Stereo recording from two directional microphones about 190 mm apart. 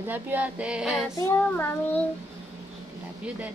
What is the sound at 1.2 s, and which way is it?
Speech, 10° left (ahead or behind).